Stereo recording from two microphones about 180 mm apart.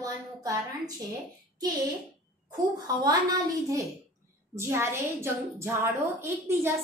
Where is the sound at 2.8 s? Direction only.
20° right (ahead or behind).